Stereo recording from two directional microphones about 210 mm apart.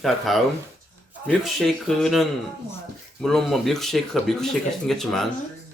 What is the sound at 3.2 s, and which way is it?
Speech, centre (ahead or behind).